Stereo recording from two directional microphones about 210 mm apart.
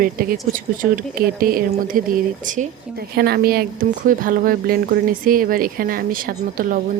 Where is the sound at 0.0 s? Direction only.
40° right (ahead or behind).